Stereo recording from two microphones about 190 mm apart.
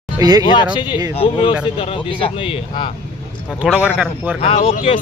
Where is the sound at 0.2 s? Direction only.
20° right (ahead or behind).